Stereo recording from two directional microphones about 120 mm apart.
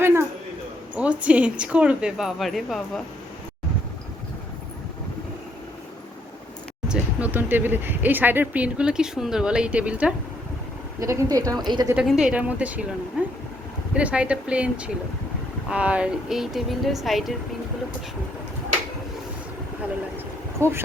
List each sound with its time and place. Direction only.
0.0 s a sound: 20° right (ahead or behind)
0.9 s speech: 10° right (ahead or behind)
6.8 s speech: 10° right (ahead or behind)
11.0 s speech: 25° right (ahead or behind)
11.9 s speech: 5° right (ahead or behind)
20.6 s speech: 20° right (ahead or behind)